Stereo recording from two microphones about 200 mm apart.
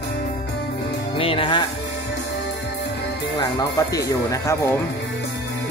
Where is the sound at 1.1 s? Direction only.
25° left (ahead or behind).